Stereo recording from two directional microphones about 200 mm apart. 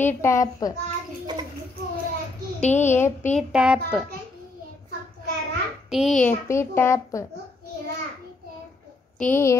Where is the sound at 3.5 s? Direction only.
5° right (ahead or behind).